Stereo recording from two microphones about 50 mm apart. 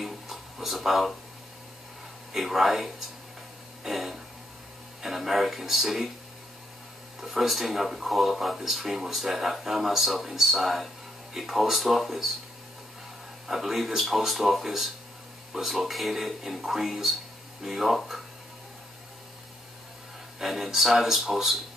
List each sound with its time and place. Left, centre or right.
0.0 s a sound: centre
2.3 s speech: centre
7.3 s speech: centre
13.5 s speech: centre
20.3 s speech: centre